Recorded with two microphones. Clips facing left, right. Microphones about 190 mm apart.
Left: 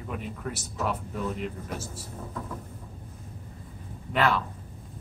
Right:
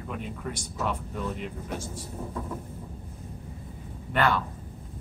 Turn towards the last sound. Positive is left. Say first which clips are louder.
# even
turn(degrees=0)  # may be behind; listen again after turning